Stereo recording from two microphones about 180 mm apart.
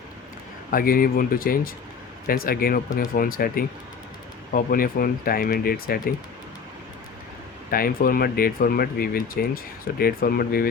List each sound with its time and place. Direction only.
0.7 s speech: 55° left (ahead or behind)
7.7 s speech: 55° left (ahead or behind)